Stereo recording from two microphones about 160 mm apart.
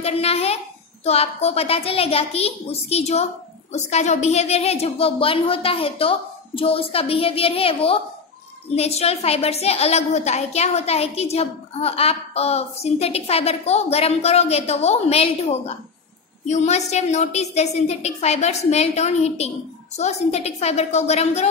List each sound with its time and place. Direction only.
0.0 s a woman's voice: 40° left (ahead or behind)